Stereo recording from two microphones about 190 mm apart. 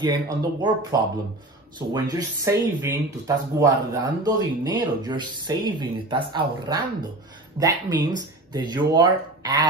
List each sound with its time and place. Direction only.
0.0 s speech: 20° right (ahead or behind)